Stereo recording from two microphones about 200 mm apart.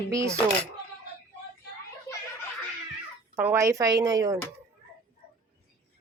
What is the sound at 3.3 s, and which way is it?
Speech, 10° right (ahead or behind).